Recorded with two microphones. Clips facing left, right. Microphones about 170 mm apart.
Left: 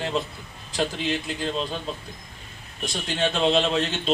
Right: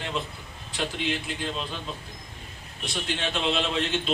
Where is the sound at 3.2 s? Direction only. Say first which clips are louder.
Left 7 dB; 35° left (ahead or behind).